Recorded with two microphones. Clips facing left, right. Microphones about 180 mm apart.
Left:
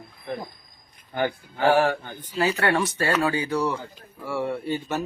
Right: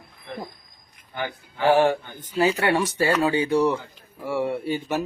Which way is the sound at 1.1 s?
50° left (ahead or behind).